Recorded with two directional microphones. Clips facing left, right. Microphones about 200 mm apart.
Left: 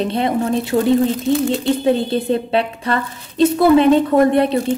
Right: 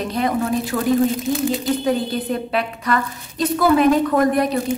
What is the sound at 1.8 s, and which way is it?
A woman's voice, 30° left (ahead or behind).